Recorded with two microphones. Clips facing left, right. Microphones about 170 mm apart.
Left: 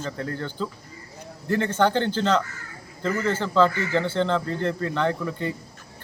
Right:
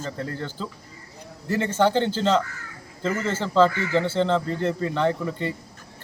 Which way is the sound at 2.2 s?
30° right (ahead or behind).